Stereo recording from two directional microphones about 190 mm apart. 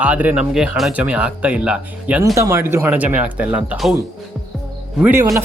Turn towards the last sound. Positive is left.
turn(degrees=-10)  # may be behind; listen again after turning